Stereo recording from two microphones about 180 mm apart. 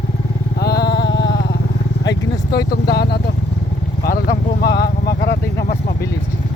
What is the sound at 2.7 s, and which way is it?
Speech, 60° left (ahead or behind).